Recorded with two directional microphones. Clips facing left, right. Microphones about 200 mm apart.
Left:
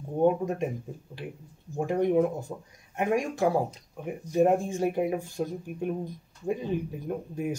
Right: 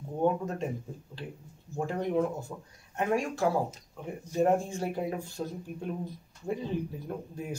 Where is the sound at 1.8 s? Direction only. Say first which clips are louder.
Left 5 dB; 15° left (ahead or behind).